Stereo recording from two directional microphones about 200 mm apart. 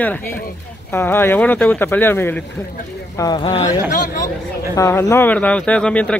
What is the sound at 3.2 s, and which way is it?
Speech, 20° left (ahead or behind).